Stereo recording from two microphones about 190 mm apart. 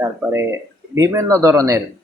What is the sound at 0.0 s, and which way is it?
Speech, 15° right (ahead or behind).